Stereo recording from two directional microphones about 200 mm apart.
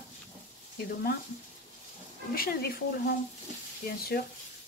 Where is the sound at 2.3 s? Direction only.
50° left (ahead or behind).